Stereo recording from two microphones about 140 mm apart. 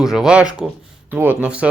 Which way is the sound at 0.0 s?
5° right (ahead or behind).